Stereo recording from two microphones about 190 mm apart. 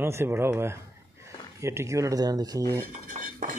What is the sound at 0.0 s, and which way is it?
Speech, 15° right (ahead or behind).